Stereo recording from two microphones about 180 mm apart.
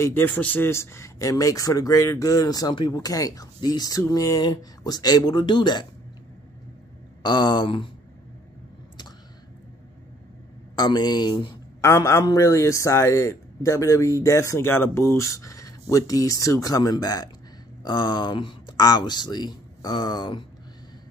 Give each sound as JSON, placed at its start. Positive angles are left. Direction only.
{"t": 0.0, "sound": "a man's voice", "side_deg": 10}
{"t": 7.2, "sound": "a man's voice", "side_deg": 25}
{"t": 10.8, "sound": "a man's voice", "side_deg": 20}